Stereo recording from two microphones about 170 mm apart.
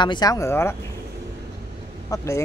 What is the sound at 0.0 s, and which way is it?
Speech, 25° left (ahead or behind).